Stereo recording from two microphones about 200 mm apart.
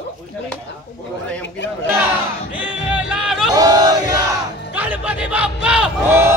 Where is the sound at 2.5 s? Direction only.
5° right (ahead or behind).